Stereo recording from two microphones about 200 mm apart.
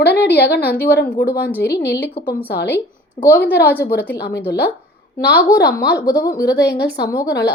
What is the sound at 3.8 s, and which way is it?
A woman's voice, 50° left (ahead or behind).